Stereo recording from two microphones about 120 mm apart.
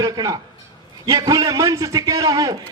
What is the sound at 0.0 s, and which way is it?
A man's voice, 30° right (ahead or behind).